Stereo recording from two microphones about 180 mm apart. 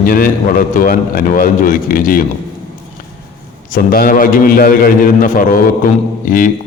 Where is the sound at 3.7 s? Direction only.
50° left (ahead or behind).